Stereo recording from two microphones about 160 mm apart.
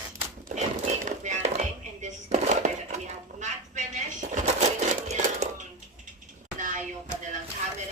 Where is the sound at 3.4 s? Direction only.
50° right (ahead or behind).